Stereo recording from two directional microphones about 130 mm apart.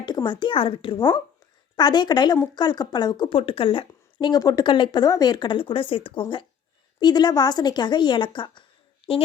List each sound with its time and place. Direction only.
0.0 s a woman's voice: 35° left (ahead or behind)
7.0 s a woman's voice: 35° left (ahead or behind)